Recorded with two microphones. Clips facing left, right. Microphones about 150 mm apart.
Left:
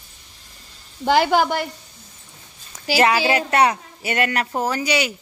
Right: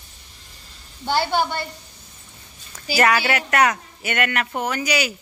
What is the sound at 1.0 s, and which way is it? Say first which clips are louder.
Speech: left 5 dB; 90° left.